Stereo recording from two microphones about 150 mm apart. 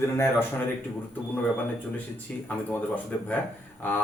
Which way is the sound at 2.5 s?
10° left (ahead or behind).